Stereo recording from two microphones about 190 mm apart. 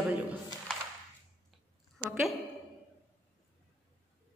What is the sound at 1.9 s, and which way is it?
Speech, centre (ahead or behind).